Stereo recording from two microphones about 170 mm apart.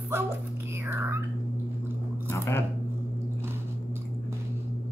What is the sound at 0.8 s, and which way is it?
Whispering, 15° right (ahead or behind).